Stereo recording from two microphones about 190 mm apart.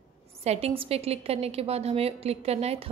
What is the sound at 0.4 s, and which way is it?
A woman's voice, 35° right (ahead or behind).